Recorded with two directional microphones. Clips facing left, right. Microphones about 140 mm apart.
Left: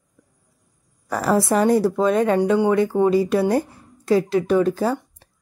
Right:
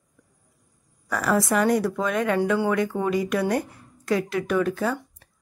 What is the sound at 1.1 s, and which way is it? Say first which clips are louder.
Speech: left 4 dB; 30° left (ahead or behind).